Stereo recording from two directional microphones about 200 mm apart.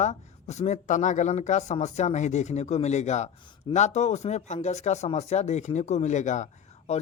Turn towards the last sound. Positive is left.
turn(degrees=35)  # may be behind; listen again after turning